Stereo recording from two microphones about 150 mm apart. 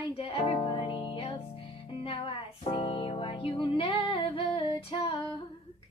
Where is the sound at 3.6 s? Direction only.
35° left (ahead or behind).